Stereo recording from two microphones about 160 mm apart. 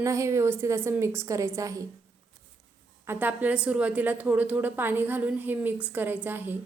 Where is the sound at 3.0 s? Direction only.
10° right (ahead or behind).